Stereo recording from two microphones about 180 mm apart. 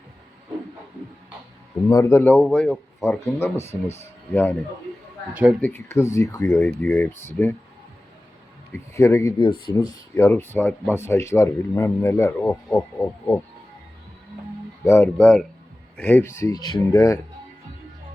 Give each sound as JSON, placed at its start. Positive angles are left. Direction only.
{"t": 1.9, "sound": "speech", "side_deg": 20}
{"t": 5.3, "sound": "speech", "side_deg": -10}
{"t": 5.5, "sound": "speech", "side_deg": 10}
{"t": 8.7, "sound": "speech", "side_deg": 15}
{"t": 9.4, "sound": "speech", "side_deg": 25}
{"t": 14.8, "sound": "speech", "side_deg": 10}